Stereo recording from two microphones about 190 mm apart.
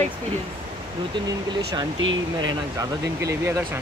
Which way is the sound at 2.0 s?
85° right.